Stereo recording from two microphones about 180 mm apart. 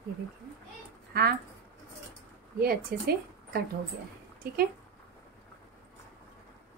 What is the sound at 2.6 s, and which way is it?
A woman's voice, 60° right (ahead or behind).